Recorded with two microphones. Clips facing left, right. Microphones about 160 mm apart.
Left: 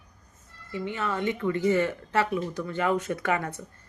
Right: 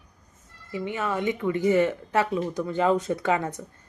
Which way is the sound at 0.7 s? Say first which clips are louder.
Right 2 dB; 15° right (ahead or behind).